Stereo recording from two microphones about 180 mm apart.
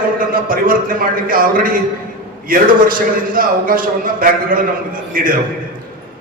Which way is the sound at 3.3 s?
50° right (ahead or behind).